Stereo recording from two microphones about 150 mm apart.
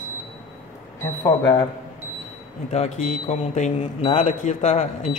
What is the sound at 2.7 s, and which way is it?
Speech, 50° left (ahead or behind).